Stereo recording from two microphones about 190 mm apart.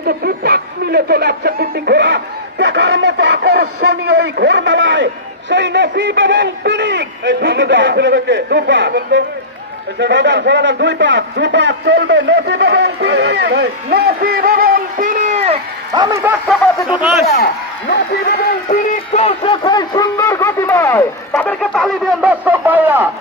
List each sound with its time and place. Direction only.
0.0 s a man's voice: 55° right (ahead or behind); by 15.6 s 35° right (ahead or behind)
15.9 s speech: 20° right (ahead or behind)
17.3 s a man's voice: 55° left (ahead or behind)
18.7 s speech: 35° left (ahead or behind); by 23.0 s 10° right (ahead or behind)